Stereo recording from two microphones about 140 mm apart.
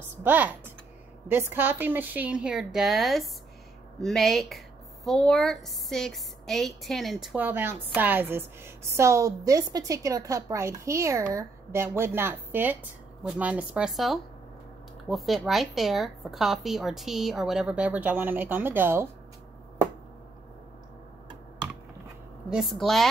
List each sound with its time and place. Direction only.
0.2 s a woman's voice: 15° right (ahead or behind)
7.3 s a woman's voice: 15° right (ahead or behind)
22.5 s a woman's voice: centre (ahead or behind)